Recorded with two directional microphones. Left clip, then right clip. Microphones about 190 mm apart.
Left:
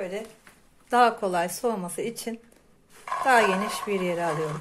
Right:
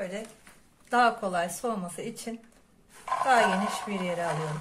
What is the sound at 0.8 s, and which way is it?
Speech, 35° left (ahead or behind).